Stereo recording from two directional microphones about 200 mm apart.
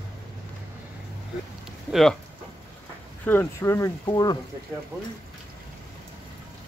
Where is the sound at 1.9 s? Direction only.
Centre (ahead or behind).